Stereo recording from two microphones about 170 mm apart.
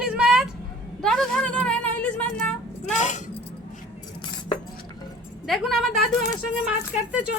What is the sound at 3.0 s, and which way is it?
Keys jangling, 45° left (ahead or behind).